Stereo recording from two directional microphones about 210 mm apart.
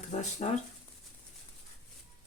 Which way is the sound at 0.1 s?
35° left (ahead or behind).